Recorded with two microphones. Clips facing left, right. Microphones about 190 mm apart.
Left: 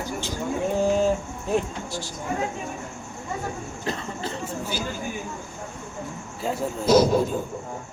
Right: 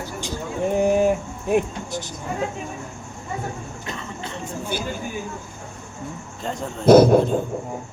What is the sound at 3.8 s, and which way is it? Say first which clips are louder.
Cough: left 5 dB; 35° left (ahead or behind).